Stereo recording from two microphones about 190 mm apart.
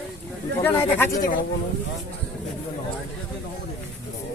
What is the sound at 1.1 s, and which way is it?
Speech, 45° left (ahead or behind).